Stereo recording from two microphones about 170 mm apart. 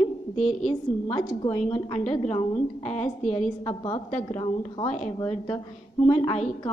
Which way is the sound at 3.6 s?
25° left (ahead or behind).